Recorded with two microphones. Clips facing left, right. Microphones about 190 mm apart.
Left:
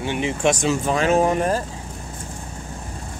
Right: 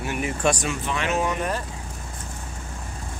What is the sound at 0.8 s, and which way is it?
Speech, 40° left (ahead or behind).